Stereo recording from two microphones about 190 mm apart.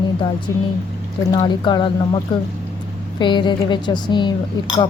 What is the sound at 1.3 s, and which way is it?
Speech, 25° left (ahead or behind).